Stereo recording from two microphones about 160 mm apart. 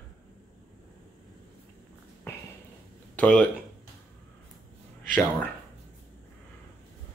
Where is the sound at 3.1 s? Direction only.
5° left (ahead or behind).